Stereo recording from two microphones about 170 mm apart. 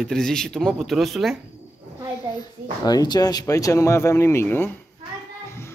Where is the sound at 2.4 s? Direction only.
25° left (ahead or behind).